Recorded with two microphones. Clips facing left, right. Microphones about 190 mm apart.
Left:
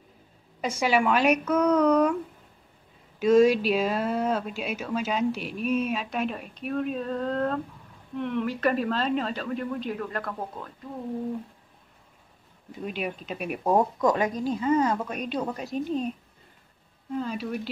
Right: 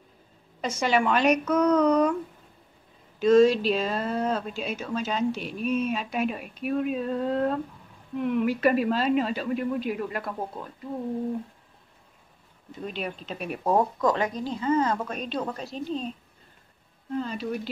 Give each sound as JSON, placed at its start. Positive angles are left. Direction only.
{"t": 0.6, "sound": "speech", "side_deg": 10}
{"t": 3.2, "sound": "a woman's voice", "side_deg": 10}
{"t": 12.8, "sound": "speech", "side_deg": 5}
{"t": 14.0, "sound": "a woman's voice", "side_deg": 20}
{"t": 17.2, "sound": "speech", "side_deg": 5}